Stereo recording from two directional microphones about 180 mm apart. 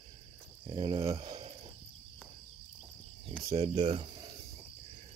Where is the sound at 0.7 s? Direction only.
30° right (ahead or behind).